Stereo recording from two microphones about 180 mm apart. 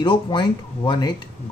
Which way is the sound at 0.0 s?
25° left (ahead or behind).